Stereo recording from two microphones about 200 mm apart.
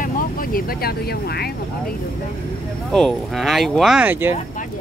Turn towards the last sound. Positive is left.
turn(degrees=-10)  # may be behind; listen again after turning